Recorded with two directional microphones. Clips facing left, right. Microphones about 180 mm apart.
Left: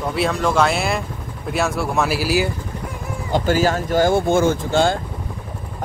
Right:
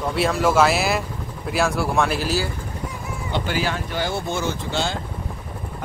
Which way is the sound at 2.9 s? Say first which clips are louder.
Left 5 dB; 45° left (ahead or behind).